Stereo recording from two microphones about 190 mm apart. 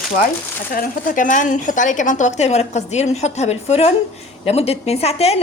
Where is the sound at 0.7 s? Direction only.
45° left (ahead or behind).